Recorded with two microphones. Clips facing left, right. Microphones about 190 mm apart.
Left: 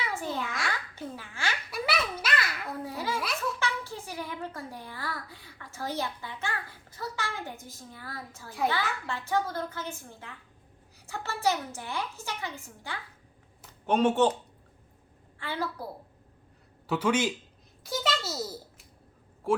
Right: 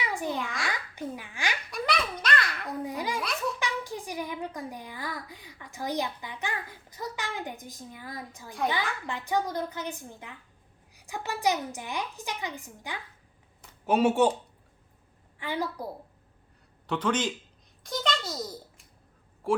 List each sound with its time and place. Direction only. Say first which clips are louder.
0.0 s babbling: right 2 dB; 15° right (ahead or behind)
0.3 s a sound: even; centre (ahead or behind)
0.7 s a child's voice: right 2 dB; 15° right (ahead or behind)
1.7 s babbling: right 1 dB; 5° left (ahead or behind)
2.8 s babbling: right 1 dB; 15° right (ahead or behind)
3.6 s a child's voice: right 1 dB; 15° right (ahead or behind)
15.4 s a woman's voice: right 2 dB; 15° right (ahead or behind)
16.8 s speech: left 1 dB; 5° left (ahead or behind)
17.8 s a sound: even; 5° left (ahead or behind)
19.5 s speech: even; centre (ahead or behind)